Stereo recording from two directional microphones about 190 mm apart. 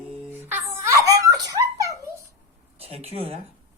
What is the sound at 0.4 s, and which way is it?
Giggle, 10° right (ahead or behind).